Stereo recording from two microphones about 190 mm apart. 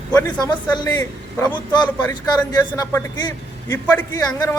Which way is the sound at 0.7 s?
25° left (ahead or behind).